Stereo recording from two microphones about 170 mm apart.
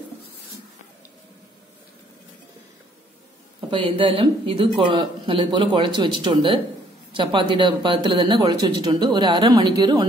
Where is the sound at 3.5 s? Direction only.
30° right (ahead or behind).